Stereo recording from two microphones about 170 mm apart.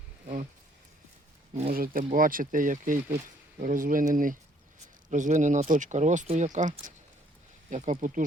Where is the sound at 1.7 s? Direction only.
60° right (ahead or behind).